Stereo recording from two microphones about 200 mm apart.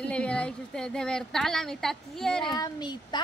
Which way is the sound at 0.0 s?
5° left (ahead or behind).